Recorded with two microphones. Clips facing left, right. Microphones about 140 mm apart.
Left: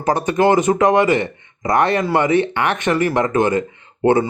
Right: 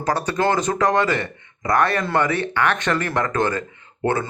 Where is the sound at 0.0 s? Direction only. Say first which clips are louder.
Left 5 dB; 15° left (ahead or behind).